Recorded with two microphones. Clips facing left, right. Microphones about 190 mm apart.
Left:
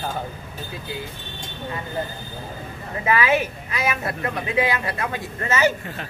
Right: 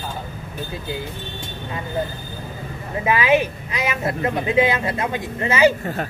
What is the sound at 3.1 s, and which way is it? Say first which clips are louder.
Speech: right 3 dB; 15° right (ahead or behind).